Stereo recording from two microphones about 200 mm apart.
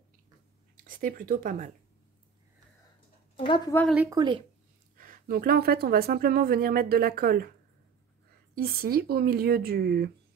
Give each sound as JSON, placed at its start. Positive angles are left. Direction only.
{"t": 0.8, "sound": "speech", "side_deg": -45}
{"t": 3.3, "sound": "speech", "side_deg": 25}
{"t": 4.1, "sound": "speech", "side_deg": -25}
{"t": 4.9, "sound": "speech", "side_deg": -45}
{"t": 8.5, "sound": "speech", "side_deg": -50}